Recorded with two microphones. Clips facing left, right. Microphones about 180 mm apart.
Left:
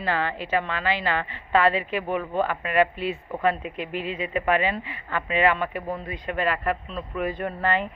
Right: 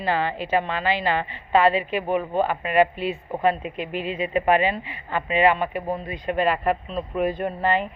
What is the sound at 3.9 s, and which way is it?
Speech, 25° left (ahead or behind).